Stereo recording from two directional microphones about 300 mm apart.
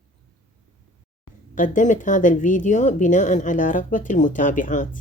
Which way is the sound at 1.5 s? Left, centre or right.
Left.